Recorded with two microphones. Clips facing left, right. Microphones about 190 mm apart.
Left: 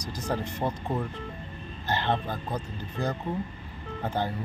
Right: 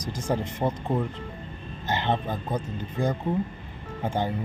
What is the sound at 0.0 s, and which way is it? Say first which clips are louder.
Speech: right 2 dB; 50° right (ahead or behind).